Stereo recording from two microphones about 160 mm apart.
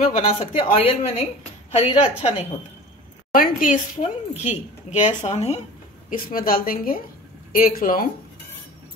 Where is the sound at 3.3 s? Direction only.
55° left (ahead or behind).